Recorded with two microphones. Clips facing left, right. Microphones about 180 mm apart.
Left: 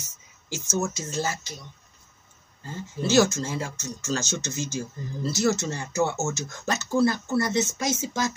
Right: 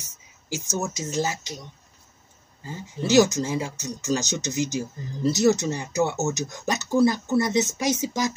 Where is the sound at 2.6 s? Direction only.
15° right (ahead or behind).